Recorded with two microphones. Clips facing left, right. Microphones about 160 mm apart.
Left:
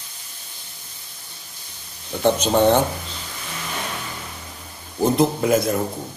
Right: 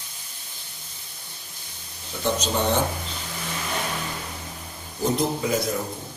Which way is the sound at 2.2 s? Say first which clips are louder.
Left 8 dB; 55° left (ahead or behind).